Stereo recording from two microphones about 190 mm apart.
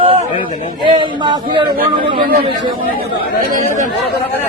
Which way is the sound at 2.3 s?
50° right (ahead or behind).